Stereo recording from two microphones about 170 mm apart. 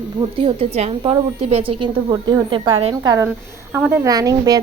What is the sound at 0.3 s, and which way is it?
A woman's voice, 35° right (ahead or behind).